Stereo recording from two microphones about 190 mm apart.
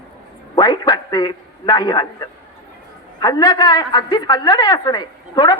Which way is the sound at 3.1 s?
20° left (ahead or behind).